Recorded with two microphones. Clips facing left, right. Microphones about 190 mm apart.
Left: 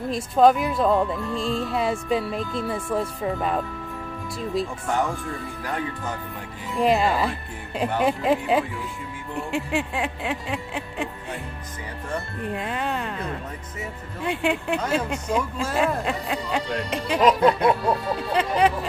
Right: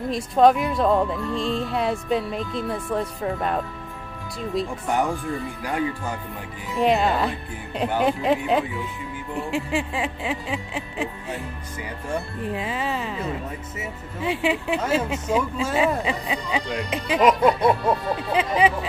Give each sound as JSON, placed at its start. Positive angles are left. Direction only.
{"t": 0.1, "sound": "speech", "side_deg": 0}
{"t": 4.8, "sound": "speech", "side_deg": -15}
{"t": 6.7, "sound": "speech", "side_deg": 0}
{"t": 12.1, "sound": "speech", "side_deg": 0}